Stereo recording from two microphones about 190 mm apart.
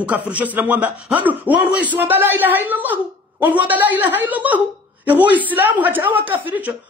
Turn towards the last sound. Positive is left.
turn(degrees=-10)  # may be behind; listen again after turning